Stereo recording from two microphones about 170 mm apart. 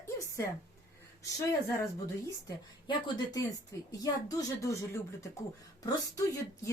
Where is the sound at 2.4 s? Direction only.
25° left (ahead or behind).